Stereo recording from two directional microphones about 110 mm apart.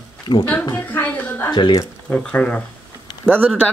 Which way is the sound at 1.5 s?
40° left (ahead or behind).